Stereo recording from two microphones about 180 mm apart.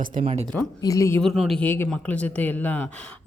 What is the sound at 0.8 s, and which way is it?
Speech, 15° left (ahead or behind).